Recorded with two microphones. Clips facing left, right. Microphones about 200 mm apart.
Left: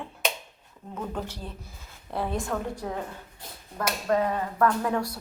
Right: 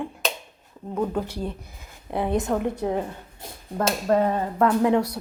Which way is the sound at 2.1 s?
20° right (ahead or behind).